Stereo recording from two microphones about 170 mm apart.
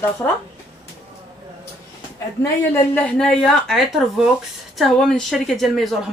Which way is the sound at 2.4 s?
10° left (ahead or behind).